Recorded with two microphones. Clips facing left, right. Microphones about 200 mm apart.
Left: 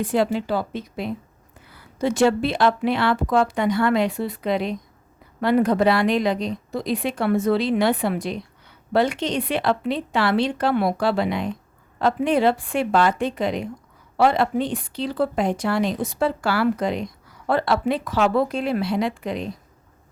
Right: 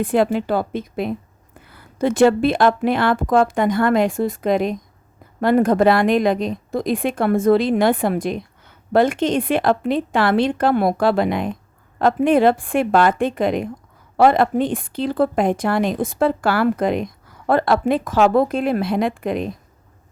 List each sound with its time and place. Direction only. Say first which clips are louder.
0.0 s a woman's voice: right 3 dB; 55° right (ahead or behind)